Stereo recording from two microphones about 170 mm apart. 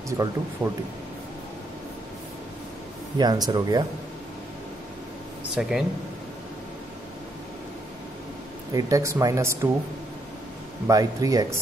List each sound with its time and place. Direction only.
0.2 s speech: 20° right (ahead or behind)
3.2 s speech: 25° right (ahead or behind)
5.6 s speech: 5° right (ahead or behind)
8.7 s speech: 20° right (ahead or behind)
10.9 s speech: 20° right (ahead or behind)